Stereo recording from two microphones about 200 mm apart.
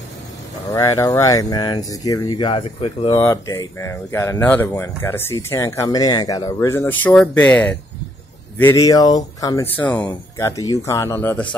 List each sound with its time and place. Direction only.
0.7 s speech: 15° left (ahead or behind)
3.2 s speech: 15° left (ahead or behind)